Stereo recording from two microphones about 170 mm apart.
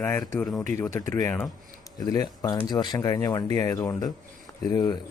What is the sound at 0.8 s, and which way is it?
Speech, 15° left (ahead or behind).